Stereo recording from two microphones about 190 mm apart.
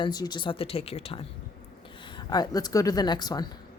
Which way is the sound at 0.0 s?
20° left (ahead or behind).